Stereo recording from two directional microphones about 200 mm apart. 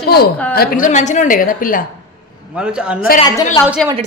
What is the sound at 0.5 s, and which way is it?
A woman's voice, 50° left (ahead or behind).